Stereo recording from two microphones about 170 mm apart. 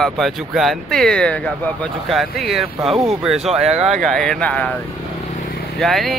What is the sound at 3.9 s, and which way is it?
Speech, centre (ahead or behind).